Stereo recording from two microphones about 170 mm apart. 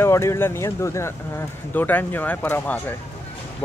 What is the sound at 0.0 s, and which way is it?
Speech, 15° left (ahead or behind).